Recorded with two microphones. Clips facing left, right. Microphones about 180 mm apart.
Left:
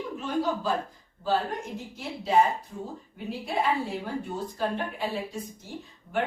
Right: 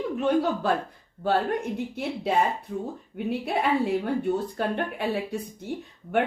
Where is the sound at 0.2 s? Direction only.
65° right (ahead or behind).